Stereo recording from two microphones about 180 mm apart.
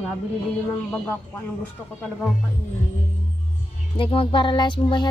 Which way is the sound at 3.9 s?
30° left (ahead or behind).